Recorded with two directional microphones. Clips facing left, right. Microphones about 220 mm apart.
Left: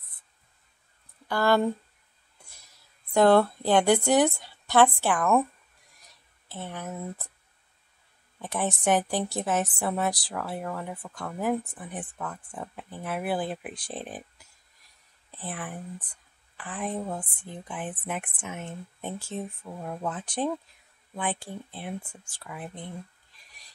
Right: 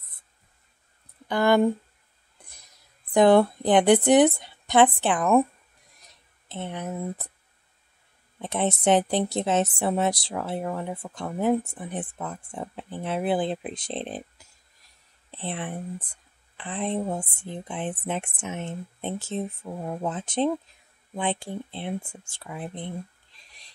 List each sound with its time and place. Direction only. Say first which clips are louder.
1.2 s speech: right 3 dB; 20° right (ahead or behind)
2.3 s a sound: right 2 dB; 15° right (ahead or behind)
3.1 s a woman's voice: right 2 dB; 15° right (ahead or behind)
6.5 s a woman's voice: right 4 dB; 20° right (ahead or behind)
8.4 s a woman's voice: right 4 dB; 20° right (ahead or behind)
15.3 s a woman's voice: right 4 dB; 25° right (ahead or behind)